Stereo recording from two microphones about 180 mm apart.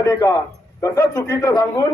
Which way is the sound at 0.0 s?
15° left (ahead or behind).